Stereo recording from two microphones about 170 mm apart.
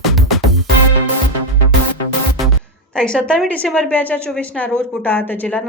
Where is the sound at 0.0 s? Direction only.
Centre (ahead or behind).